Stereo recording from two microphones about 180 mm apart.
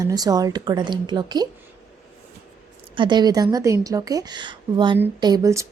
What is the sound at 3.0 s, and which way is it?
A woman's voice, 25° right (ahead or behind).